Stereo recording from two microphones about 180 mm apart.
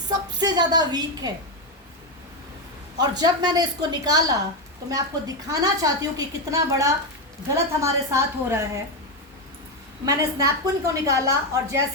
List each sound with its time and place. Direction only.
0.3 s a woman's voice: 20° right (ahead or behind)
3.0 s a woman's voice: 25° right (ahead or behind)
10.1 s a woman's voice: 20° right (ahead or behind)